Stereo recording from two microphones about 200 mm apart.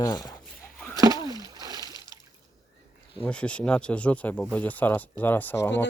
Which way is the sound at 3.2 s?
5° left (ahead or behind).